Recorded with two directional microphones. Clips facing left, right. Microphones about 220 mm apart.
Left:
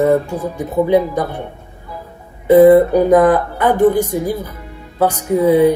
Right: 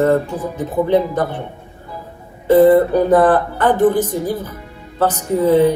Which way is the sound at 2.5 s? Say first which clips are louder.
Left 3 dB; 10° left (ahead or behind).